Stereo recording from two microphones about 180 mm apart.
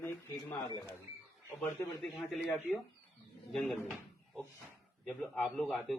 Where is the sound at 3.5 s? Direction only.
Centre (ahead or behind).